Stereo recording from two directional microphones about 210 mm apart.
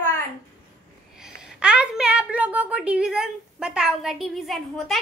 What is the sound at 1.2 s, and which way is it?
A woman's voice, 5° right (ahead or behind).